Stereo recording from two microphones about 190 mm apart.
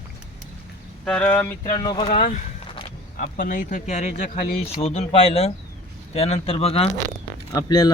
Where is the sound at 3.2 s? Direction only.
45° left (ahead or behind).